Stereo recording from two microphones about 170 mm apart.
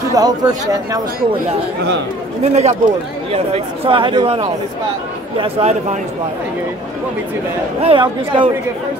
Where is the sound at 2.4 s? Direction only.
40° right (ahead or behind).